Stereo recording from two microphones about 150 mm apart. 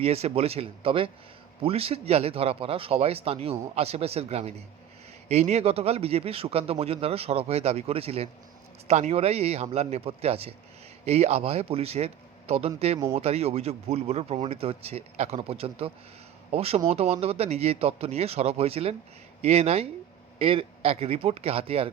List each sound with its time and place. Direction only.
0.0 s a man's voice: 45° right (ahead or behind)